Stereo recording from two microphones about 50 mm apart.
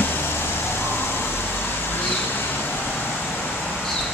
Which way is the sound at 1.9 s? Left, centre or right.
Left.